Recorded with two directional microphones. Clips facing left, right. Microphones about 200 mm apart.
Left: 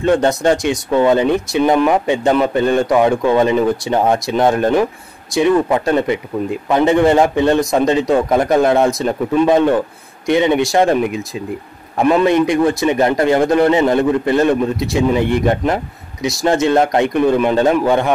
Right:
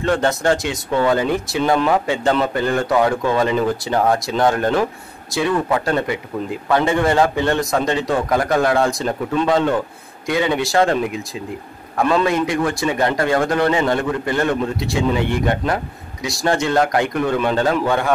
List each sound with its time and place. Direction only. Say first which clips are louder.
0.0 s a man's voice: left 4 dB; 20° left (ahead or behind)
12.0 s a man's voice: left 5 dB; 20° left (ahead or behind)